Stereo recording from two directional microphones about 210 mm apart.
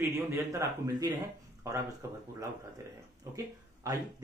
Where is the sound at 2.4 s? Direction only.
15° right (ahead or behind).